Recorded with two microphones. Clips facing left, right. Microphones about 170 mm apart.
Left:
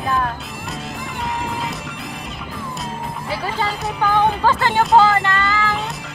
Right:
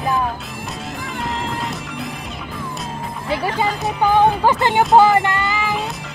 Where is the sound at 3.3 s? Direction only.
15° right (ahead or behind).